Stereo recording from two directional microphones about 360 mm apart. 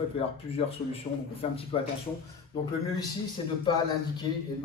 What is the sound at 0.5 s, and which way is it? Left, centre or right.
Speech, centre.